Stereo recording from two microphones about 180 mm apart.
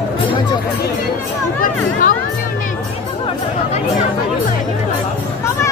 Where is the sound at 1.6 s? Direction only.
50° left (ahead or behind).